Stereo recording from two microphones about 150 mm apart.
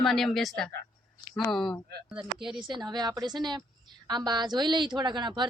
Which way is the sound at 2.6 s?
30° right (ahead or behind).